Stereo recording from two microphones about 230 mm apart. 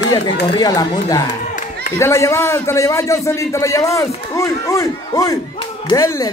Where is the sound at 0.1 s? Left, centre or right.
Centre.